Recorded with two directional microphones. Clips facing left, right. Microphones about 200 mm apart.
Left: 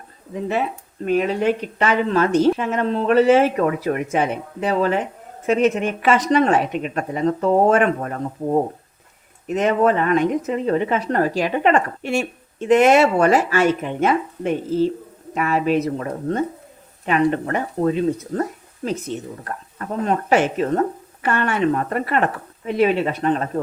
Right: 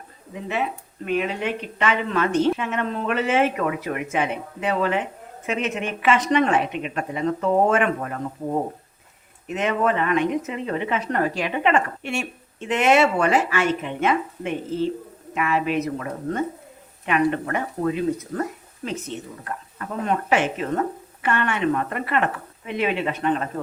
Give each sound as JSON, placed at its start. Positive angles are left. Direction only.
{"t": 1.0, "sound": "speech", "side_deg": 40}
{"t": 20.1, "sound": "speech", "side_deg": 40}